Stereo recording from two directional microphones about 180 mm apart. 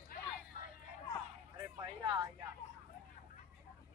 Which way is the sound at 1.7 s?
25° right (ahead or behind).